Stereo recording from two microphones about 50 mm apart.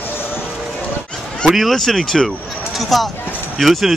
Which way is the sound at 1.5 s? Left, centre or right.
Centre.